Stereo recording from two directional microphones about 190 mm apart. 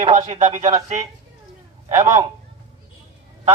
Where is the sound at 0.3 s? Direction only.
40° right (ahead or behind).